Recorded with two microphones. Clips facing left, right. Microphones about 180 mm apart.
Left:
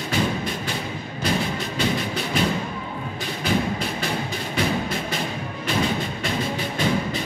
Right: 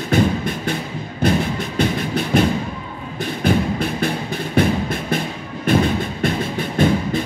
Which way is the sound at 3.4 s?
55° right (ahead or behind).